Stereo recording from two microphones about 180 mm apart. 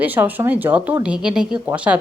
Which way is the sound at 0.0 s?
10° right (ahead or behind).